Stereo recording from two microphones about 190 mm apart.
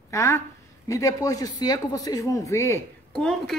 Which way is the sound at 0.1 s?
15° left (ahead or behind).